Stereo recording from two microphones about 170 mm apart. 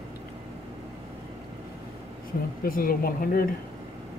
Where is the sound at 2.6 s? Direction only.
55° left (ahead or behind).